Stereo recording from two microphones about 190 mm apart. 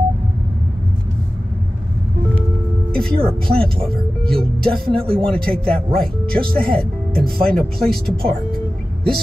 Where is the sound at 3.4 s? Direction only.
5° left (ahead or behind).